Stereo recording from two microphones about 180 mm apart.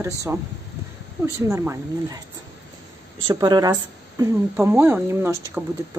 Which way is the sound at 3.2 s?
25° right (ahead or behind).